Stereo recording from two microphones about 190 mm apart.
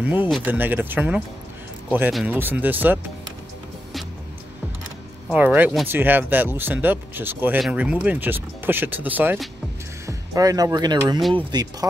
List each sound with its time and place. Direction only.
0.0 s speech: 10° right (ahead or behind)
5.3 s speech: 10° right (ahead or behind)